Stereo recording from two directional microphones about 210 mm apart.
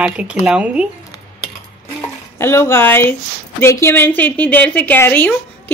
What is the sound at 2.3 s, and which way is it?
Speech, 10° left (ahead or behind).